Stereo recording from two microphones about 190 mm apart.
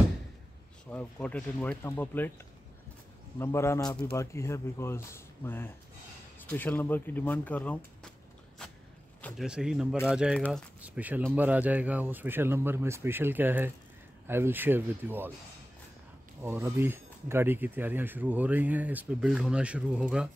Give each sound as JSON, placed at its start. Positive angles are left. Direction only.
{"t": 0.8, "sound": "a man's voice", "side_deg": 5}
{"t": 3.3, "sound": "a man's voice", "side_deg": 15}
{"t": 9.2, "sound": "speech", "side_deg": 0}
{"t": 16.4, "sound": "speech", "side_deg": -15}